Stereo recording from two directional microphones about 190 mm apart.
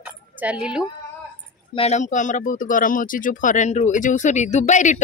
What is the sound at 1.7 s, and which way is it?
Speech, 35° left (ahead or behind).